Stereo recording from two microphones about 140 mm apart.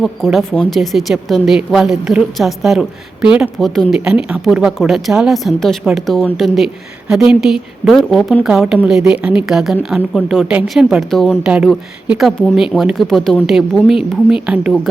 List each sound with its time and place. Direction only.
0.0 s speech: centre (ahead or behind)